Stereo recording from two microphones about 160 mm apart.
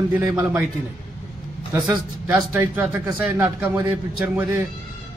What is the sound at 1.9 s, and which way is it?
Speech, 10° right (ahead or behind).